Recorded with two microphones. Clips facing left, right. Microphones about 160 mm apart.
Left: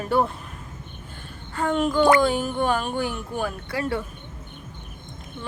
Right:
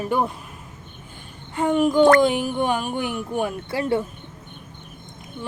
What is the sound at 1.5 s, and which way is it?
Speech, 15° right (ahead or behind).